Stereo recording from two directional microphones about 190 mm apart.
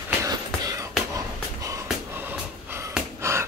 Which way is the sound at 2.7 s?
15° right (ahead or behind).